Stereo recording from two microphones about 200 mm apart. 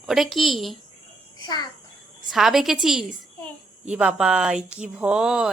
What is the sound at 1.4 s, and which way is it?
Speech, 20° left (ahead or behind).